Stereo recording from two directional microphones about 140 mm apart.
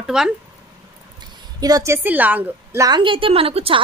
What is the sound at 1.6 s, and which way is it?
A woman's voice, 25° right (ahead or behind).